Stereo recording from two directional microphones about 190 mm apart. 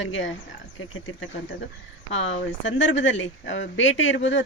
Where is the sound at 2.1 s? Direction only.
80° left.